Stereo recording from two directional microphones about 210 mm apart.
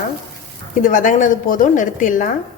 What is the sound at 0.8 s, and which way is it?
A woman's voice, 40° left (ahead or behind).